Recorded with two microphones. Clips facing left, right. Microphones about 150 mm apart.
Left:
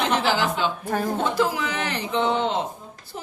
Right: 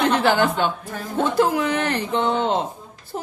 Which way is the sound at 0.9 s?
55° left (ahead or behind).